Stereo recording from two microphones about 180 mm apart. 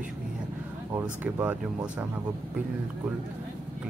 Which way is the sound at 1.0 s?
10° right (ahead or behind).